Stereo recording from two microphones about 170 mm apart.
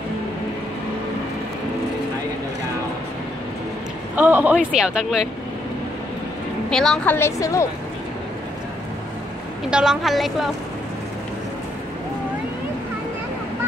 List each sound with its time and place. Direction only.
4.1 s speech: 10° right (ahead or behind)
6.7 s a woman's voice: 5° left (ahead or behind)
7.2 s a woman's voice: 15° left (ahead or behind)
9.7 s a woman's voice: 5° right (ahead or behind)